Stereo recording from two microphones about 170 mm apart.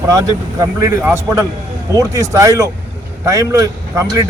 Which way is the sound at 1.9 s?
20° right (ahead or behind).